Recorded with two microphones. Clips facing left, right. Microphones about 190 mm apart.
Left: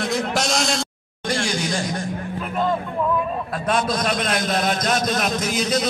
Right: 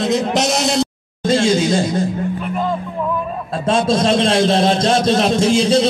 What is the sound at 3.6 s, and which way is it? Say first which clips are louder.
A man's voice: right 7 dB; 25° right (ahead or behind).